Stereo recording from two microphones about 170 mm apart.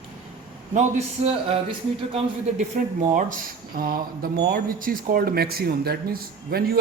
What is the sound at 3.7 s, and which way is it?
Speech, 60° right (ahead or behind).